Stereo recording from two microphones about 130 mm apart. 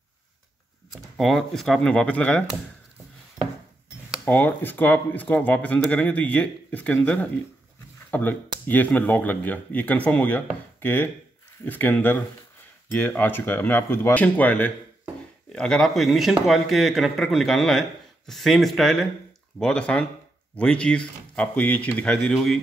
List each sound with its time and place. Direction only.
1.1 s a man's voice: centre (ahead or behind)
3.4 s cutlery: 5° right (ahead or behind)
4.2 s a man's voice: 15° left (ahead or behind)